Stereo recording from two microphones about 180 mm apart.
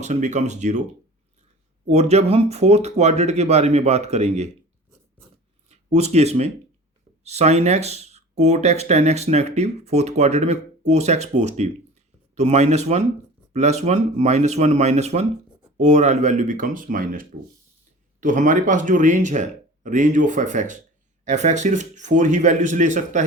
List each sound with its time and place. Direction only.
0.0 s speech: 40° right (ahead or behind)
1.9 s speech: 35° right (ahead or behind)
5.6 s speech: 35° right (ahead or behind)